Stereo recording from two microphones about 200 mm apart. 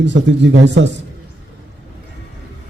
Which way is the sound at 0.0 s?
65° right (ahead or behind).